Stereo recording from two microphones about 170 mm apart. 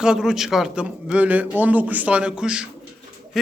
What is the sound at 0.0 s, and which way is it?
Speech, 5° right (ahead or behind).